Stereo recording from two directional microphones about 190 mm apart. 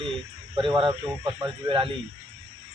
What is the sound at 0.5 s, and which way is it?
Speech, 25° right (ahead or behind).